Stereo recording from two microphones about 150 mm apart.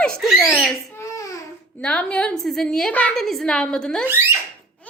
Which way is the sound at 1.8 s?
5° left (ahead or behind).